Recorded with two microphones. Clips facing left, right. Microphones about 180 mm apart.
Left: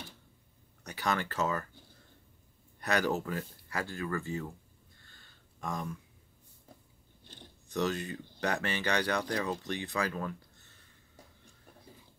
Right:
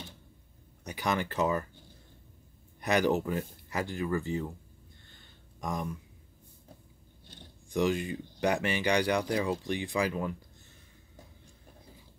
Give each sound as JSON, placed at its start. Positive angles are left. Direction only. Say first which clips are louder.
{"t": 0.8, "sound": "speech", "louder": "right 2 dB", "side_deg": -15}
{"t": 2.8, "sound": "speech", "louder": "right 4 dB", "side_deg": -15}
{"t": 5.1, "sound": "a sound", "louder": "right 4 dB", "side_deg": -15}
{"t": 7.2, "sound": "speech", "louder": "right 1 dB", "side_deg": -15}